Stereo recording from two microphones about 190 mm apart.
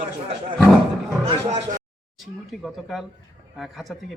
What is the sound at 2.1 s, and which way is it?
Speech, centre (ahead or behind).